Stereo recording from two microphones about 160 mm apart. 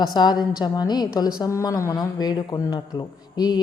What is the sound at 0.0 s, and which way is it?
A woman's voice, 25° left (ahead or behind).